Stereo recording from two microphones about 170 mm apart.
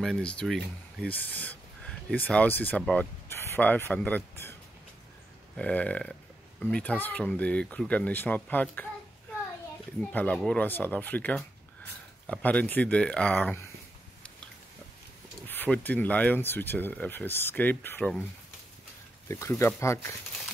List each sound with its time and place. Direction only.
0.0 s speech: 5° left (ahead or behind)
5.6 s speech: 10° left (ahead or behind)
9.9 s speech: 5° left (ahead or behind)
15.4 s speech: 10° left (ahead or behind)
19.2 s speech: 15° left (ahead or behind)